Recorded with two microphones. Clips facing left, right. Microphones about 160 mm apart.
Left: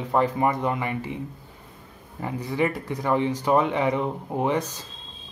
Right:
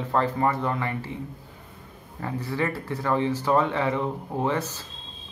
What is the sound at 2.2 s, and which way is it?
Speech, 15° left (ahead or behind).